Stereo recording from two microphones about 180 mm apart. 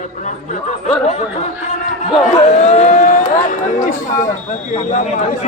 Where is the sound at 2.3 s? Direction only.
40° left (ahead or behind).